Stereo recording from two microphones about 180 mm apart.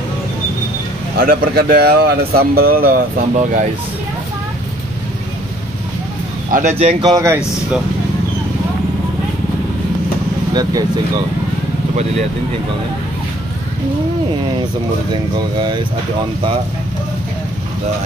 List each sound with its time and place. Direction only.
1.1 s speech: 55° right (ahead or behind)
6.5 s speech: 50° right (ahead or behind)
7.0 s speech: 20° right (ahead or behind)
10.5 s speech: 20° right (ahead or behind)
15.3 s speech: 25° right (ahead or behind)